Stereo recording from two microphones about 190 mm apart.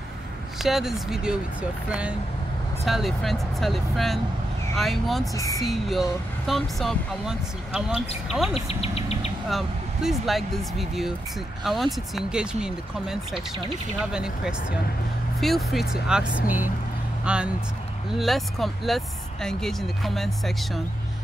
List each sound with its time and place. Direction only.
0.6 s speech: centre (ahead or behind)
8.5 s insect: 30° left (ahead or behind)
9.5 s speech: centre (ahead or behind)